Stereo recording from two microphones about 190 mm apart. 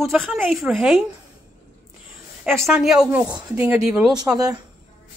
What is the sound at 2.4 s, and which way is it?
A woman's voice, centre (ahead or behind).